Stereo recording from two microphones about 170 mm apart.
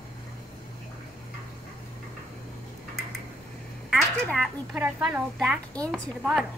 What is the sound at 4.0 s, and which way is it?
A woman's voice, 5° left (ahead or behind).